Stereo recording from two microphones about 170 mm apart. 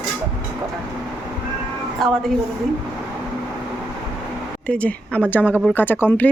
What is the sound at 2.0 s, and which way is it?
Speech, centre (ahead or behind).